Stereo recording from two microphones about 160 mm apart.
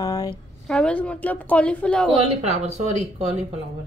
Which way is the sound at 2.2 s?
40° right (ahead or behind).